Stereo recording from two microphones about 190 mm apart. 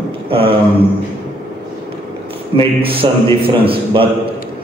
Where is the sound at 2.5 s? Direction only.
30° right (ahead or behind).